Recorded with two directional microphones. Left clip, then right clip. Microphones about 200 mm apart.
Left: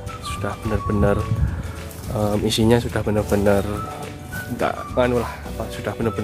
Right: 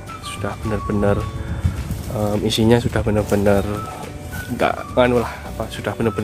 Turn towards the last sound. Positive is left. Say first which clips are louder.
# right 3 dB
turn(degrees=-10)  # may be behind; listen again after turning